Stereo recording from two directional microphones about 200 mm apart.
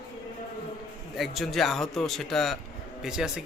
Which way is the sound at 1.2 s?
Centre (ahead or behind).